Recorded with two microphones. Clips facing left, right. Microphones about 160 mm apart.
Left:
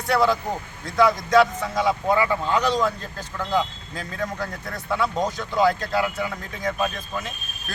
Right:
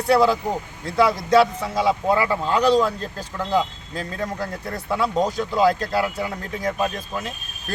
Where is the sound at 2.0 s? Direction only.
20° right (ahead or behind).